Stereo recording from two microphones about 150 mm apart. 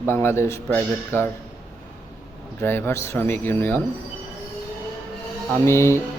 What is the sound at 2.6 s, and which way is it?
A man's voice, 15° left (ahead or behind).